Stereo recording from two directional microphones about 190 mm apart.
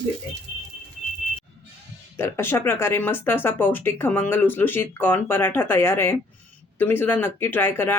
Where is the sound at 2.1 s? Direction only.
10° left (ahead or behind).